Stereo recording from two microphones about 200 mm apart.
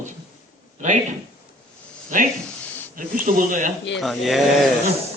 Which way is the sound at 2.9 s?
40° right (ahead or behind).